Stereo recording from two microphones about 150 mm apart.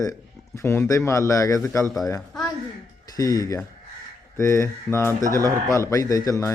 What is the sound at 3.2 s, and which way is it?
A man's voice, 20° left (ahead or behind).